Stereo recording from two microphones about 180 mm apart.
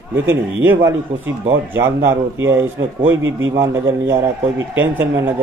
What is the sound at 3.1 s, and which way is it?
Speech, 90° right.